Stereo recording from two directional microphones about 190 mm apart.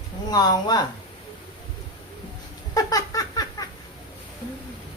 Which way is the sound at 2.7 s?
20° left (ahead or behind).